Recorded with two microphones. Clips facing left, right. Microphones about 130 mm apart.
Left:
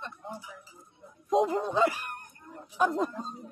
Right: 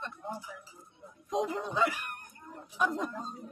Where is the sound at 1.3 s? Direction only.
35° left (ahead or behind).